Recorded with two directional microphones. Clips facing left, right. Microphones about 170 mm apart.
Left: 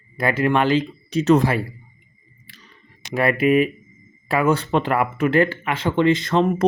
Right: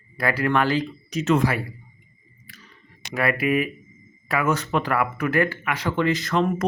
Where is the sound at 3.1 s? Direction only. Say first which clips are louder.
Left 5 dB; 25° left (ahead or behind).